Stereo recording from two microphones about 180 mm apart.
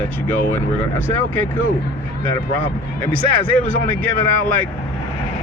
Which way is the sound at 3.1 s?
10° left (ahead or behind).